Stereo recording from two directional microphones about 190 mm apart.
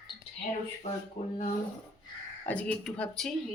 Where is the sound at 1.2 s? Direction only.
35° left (ahead or behind).